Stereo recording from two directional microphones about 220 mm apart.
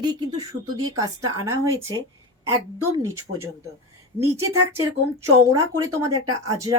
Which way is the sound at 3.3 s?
40° right (ahead or behind).